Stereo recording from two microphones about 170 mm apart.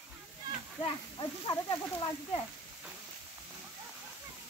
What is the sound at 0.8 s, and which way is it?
Speech, 25° left (ahead or behind).